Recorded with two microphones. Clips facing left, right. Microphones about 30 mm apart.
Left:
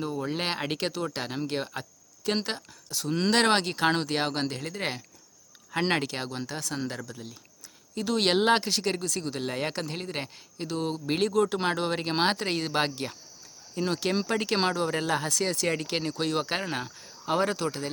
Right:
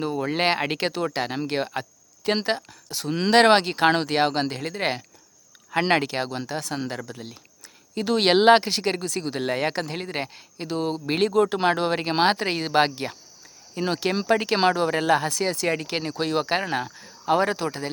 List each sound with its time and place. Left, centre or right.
0.0 s speech: right
0.5 s speech: right
7.0 s speech: right; by 17.8 s centre